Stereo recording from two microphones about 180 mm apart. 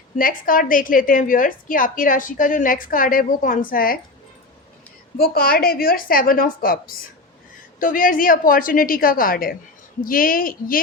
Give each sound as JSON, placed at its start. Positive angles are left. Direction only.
{"t": 0.2, "sound": "a woman's voice", "side_deg": 50}
{"t": 5.1, "sound": "a woman's voice", "side_deg": 55}